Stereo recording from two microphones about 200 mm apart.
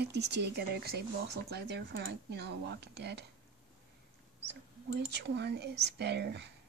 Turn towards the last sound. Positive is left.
turn(degrees=-60)  # may be behind; listen again after turning